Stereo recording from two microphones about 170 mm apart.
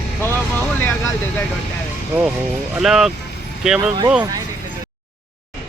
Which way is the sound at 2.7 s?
Centre (ahead or behind).